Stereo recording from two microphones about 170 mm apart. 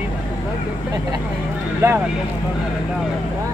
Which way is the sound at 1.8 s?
15° right (ahead or behind).